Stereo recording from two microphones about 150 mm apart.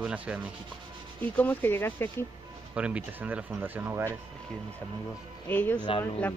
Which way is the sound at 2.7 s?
10° right (ahead or behind).